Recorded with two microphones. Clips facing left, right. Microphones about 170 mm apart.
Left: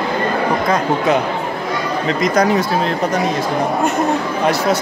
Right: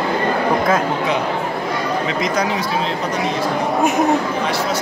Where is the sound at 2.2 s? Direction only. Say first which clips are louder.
Left 5 dB; 45° left (ahead or behind).